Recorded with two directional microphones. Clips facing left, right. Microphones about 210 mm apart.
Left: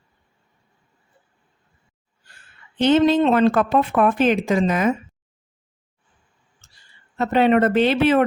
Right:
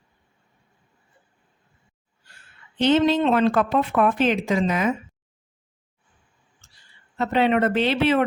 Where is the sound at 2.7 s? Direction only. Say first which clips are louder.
Left 3 dB; 50° left (ahead or behind).